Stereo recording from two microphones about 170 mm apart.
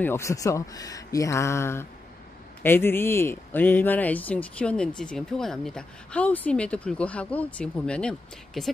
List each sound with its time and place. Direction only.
0.0 s speech: 15° left (ahead or behind)